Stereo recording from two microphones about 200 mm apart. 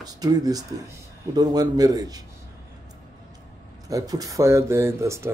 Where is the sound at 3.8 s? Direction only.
15° right (ahead or behind).